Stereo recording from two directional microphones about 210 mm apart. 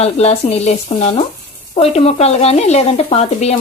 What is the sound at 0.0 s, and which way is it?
Speech, 30° left (ahead or behind).